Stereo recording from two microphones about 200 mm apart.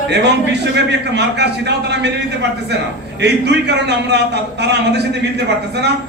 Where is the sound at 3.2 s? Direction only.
60° right (ahead or behind).